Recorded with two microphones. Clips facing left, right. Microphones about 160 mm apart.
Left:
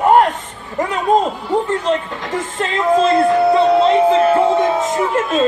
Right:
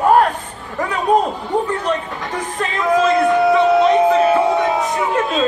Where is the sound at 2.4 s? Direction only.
25° left (ahead or behind).